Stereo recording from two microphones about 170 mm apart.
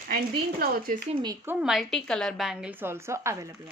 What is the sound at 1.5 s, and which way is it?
A woman's voice, 5° right (ahead or behind).